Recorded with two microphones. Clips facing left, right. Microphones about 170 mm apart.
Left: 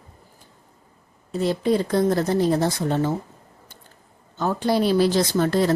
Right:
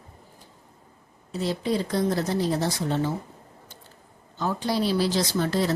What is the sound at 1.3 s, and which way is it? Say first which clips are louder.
Speech: left 5 dB; 55° left (ahead or behind).